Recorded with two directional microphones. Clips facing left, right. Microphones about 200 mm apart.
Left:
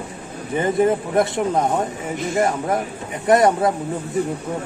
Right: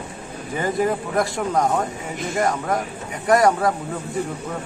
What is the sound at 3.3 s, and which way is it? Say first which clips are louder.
Speech: left 2 dB; 25° left (ahead or behind).